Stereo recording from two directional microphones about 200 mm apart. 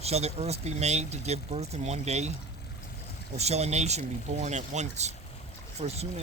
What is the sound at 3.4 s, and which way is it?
Speech, 30° right (ahead or behind).